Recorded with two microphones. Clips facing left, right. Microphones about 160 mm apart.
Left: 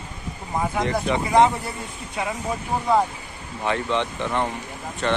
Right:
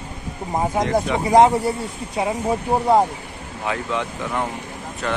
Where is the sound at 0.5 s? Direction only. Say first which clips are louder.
Right 4 dB; 35° right (ahead or behind).